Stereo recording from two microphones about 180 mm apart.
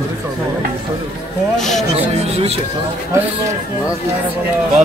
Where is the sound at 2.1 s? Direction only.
35° right (ahead or behind).